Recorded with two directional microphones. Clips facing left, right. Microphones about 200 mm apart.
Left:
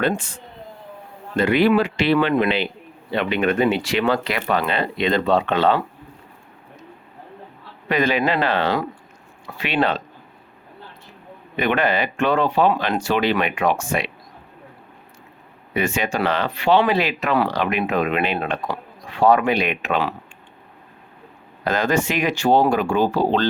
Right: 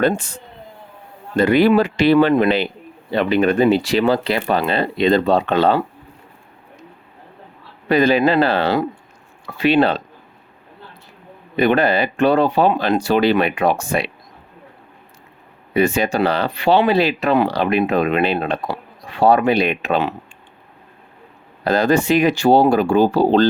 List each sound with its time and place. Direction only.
0.1 s speech: 40° right (ahead or behind)
1.4 s speech: 40° right (ahead or behind)
7.9 s speech: 35° right (ahead or behind)
11.5 s speech: 35° right (ahead or behind)
15.7 s speech: 35° right (ahead or behind)
21.6 s speech: 35° right (ahead or behind)